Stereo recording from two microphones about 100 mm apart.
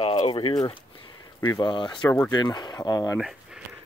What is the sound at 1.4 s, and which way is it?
Speech, 45° left (ahead or behind).